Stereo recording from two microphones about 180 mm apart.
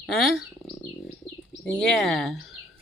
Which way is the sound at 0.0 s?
Centre (ahead or behind).